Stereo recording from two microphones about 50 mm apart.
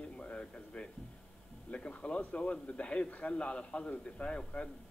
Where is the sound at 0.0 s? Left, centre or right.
Left.